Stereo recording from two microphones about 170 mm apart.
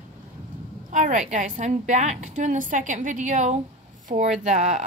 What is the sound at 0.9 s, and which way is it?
A woman's voice, 50° right (ahead or behind).